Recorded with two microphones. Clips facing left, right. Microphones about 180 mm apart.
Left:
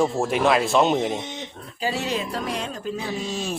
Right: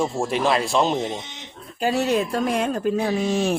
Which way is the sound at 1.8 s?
50° right (ahead or behind).